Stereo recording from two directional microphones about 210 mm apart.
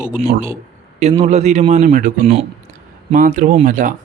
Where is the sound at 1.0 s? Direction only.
30° right (ahead or behind).